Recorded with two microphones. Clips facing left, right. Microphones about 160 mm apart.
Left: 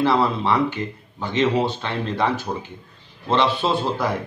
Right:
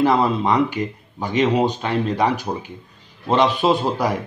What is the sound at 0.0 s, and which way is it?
Speech, 15° right (ahead or behind).